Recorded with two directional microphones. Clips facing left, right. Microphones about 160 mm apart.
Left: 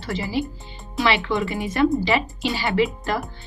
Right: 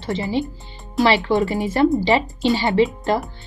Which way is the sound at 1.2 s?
40° right (ahead or behind).